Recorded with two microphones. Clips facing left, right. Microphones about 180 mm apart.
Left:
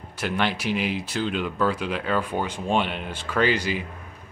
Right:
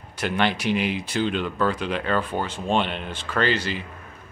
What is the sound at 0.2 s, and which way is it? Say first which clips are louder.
A man's voice: right 2 dB; 5° left (ahead or behind).